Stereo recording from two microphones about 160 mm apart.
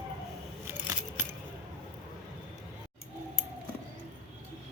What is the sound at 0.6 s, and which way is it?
Keys jangling, 15° right (ahead or behind).